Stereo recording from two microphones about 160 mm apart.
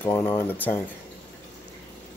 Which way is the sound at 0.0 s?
10° left (ahead or behind).